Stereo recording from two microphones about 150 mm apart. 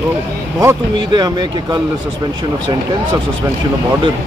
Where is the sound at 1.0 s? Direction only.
30° right (ahead or behind).